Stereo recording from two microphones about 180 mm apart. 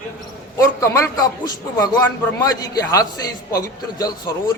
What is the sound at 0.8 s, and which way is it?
A man's voice, 15° left (ahead or behind).